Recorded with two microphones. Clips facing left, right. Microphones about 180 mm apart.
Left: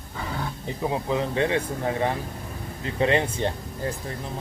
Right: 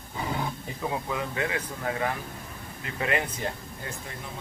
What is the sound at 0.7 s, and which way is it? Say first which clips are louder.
Speech: left 10 dB; 25° left (ahead or behind).